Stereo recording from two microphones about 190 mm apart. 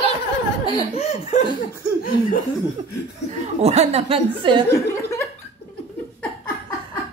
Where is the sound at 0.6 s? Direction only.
30° left (ahead or behind).